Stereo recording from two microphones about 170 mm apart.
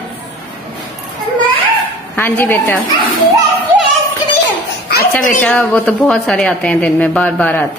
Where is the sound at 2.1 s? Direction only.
15° left (ahead or behind).